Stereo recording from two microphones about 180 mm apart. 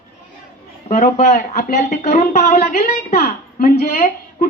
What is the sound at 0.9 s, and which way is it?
Speech, 40° left (ahead or behind).